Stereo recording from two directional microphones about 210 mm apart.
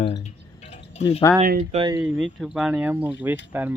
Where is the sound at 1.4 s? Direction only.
40° right (ahead or behind).